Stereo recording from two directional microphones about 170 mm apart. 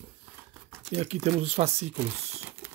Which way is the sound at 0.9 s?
40° right (ahead or behind).